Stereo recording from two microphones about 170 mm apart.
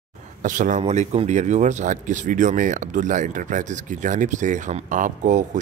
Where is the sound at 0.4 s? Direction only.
50° right (ahead or behind).